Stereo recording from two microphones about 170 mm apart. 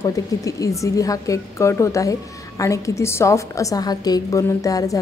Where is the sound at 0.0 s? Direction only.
20° left (ahead or behind).